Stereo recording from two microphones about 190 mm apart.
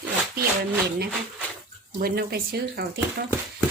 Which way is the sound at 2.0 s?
55° right (ahead or behind).